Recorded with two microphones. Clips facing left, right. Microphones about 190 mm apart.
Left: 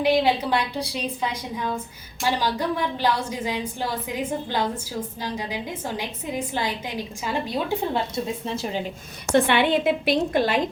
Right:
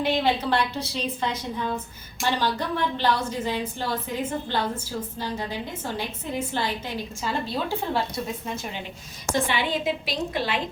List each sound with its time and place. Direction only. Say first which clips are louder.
0.0 s a woman's voice: left 3 dB; 10° left (ahead or behind)
6.5 s a woman's voice: left 1 dB; 15° left (ahead or behind)
8.4 s a woman's voice: left 5 dB; 35° left (ahead or behind)
9.3 s a woman's voice: left 6 dB; 65° left (ahead or behind); by 10.6 s 45° left (ahead or behind)